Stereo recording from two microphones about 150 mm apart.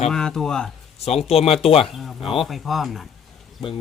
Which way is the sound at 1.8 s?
Centre (ahead or behind).